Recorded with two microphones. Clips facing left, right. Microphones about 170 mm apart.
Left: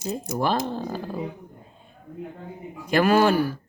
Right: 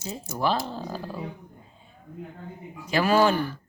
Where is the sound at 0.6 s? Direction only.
50° left (ahead or behind).